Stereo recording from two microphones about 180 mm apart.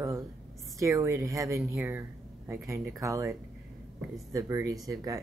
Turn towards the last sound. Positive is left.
turn(degrees=-20)  # may be behind; listen again after turning